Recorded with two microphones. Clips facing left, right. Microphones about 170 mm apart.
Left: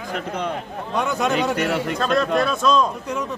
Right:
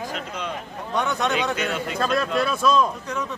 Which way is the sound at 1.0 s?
5° left (ahead or behind).